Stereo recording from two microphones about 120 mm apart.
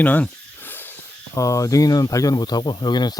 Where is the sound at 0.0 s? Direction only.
15° left (ahead or behind).